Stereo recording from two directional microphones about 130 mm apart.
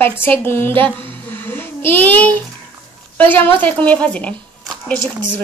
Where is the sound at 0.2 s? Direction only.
15° left (ahead or behind).